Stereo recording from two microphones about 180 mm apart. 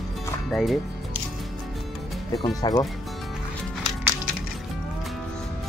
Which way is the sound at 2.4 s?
20° left (ahead or behind).